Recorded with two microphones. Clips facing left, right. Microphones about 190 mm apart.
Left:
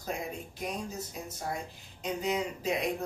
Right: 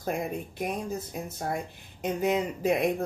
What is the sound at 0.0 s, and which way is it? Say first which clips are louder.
Speech: right 6 dB; 55° right (ahead or behind).